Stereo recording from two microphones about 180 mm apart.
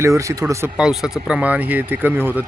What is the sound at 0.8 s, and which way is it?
Speech, 5° right (ahead or behind).